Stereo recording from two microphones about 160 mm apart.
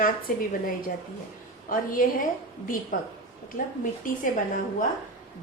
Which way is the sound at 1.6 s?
60° left (ahead or behind).